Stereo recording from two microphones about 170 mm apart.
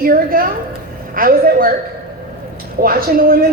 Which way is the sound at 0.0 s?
60° right (ahead or behind).